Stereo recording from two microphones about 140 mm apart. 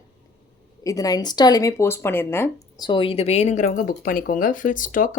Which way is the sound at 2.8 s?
35° left (ahead or behind).